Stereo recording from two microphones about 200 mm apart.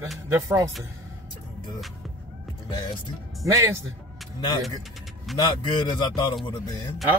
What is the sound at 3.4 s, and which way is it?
Speech, 15° right (ahead or behind).